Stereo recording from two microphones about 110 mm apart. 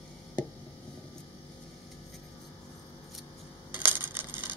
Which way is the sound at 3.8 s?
20° right (ahead or behind).